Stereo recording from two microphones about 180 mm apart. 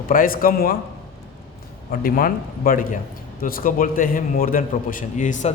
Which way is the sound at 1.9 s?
55° left (ahead or behind).